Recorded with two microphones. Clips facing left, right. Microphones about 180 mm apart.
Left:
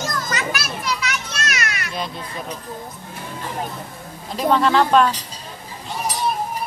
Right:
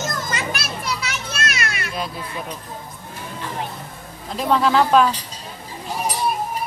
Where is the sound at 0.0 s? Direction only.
25° right (ahead or behind).